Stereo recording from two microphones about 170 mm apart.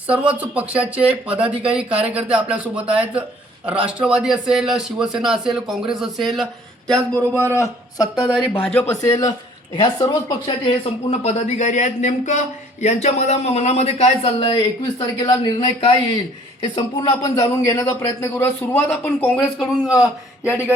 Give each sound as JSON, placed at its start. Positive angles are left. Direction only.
{"t": 0.1, "sound": "a man's voice", "side_deg": -10}
{"t": 7.2, "sound": "speech", "side_deg": -15}
{"t": 7.5, "sound": "a man's voice", "side_deg": 20}
{"t": 8.1, "sound": "a man's voice", "side_deg": -5}
{"t": 8.5, "sound": "speech", "side_deg": 10}
{"t": 9.0, "sound": "a man's voice", "side_deg": 20}